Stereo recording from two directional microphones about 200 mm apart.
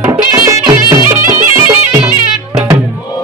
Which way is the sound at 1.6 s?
10° right (ahead or behind).